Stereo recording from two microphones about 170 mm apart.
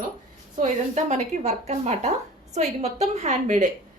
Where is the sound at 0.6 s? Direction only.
45° right (ahead or behind).